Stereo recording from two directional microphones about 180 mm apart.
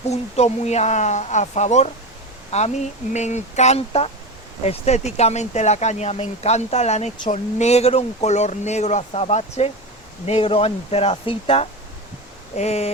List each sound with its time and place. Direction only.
0.1 s speech: 35° left (ahead or behind)